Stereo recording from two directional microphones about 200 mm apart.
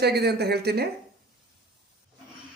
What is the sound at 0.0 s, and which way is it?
Speech, 55° right (ahead or behind).